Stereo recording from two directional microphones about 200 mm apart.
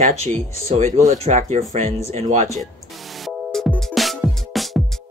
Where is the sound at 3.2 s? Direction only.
Centre (ahead or behind).